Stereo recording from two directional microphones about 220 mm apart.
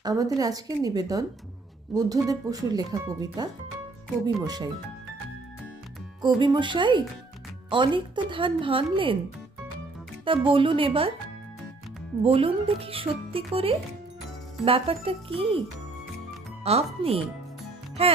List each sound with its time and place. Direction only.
0.0 s speech: 15° right (ahead or behind)
6.2 s speech: 20° right (ahead or behind)
10.2 s speech: 25° right (ahead or behind)
12.2 s speech: 25° right (ahead or behind)
16.6 s speech: 25° right (ahead or behind)